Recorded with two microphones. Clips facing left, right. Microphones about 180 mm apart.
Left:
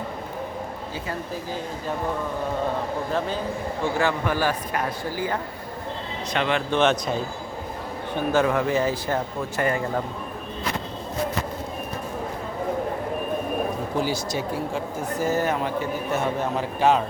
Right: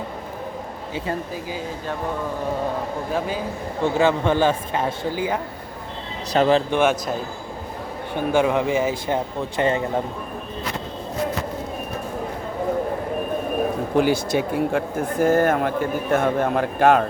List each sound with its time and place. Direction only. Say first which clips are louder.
3.1 s speech: right 3 dB; 10° right (ahead or behind)
3.8 s speech: right 6 dB; 20° right (ahead or behind)
6.3 s speech: right 7 dB; 40° right (ahead or behind)
6.7 s speech: right 1 dB; 10° right (ahead or behind)
8.1 s speech: right 2 dB; 15° right (ahead or behind)
13.9 s speech: right 9 dB; 60° right (ahead or behind)